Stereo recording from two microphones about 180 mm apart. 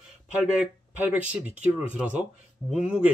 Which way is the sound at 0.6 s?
10° right (ahead or behind).